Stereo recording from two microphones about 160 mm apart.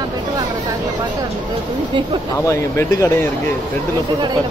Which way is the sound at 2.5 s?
15° left (ahead or behind).